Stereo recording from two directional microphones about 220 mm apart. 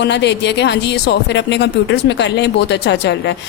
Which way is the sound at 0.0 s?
50° left (ahead or behind).